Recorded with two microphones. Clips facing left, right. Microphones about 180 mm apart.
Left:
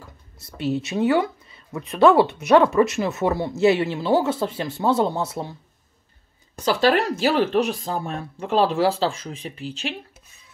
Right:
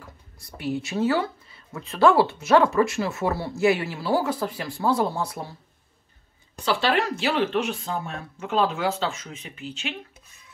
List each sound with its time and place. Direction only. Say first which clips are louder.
0.4 s speech: left 4 dB; 25° left (ahead or behind)
6.6 s speech: left 4 dB; 40° left (ahead or behind)